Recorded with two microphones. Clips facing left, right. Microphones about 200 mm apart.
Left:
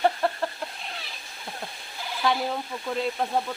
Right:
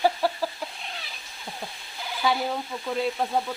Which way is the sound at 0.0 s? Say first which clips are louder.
Even; 5° right (ahead or behind).